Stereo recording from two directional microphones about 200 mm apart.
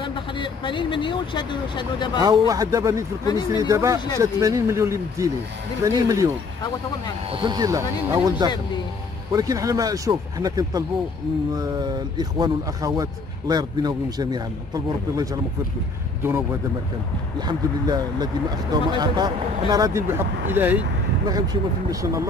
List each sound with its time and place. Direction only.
0.0 s speech: 25° left (ahead or behind)
2.1 s speech: 20° right (ahead or behind)
3.3 s speech: 20° left (ahead or behind)
3.6 s speech: 15° right (ahead or behind)
17.5 s speech: 20° right (ahead or behind)